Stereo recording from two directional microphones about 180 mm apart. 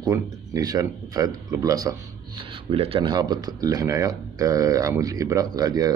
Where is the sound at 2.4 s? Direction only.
30° right (ahead or behind).